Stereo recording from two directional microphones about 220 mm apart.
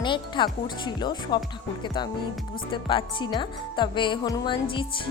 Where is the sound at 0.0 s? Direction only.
20° left (ahead or behind).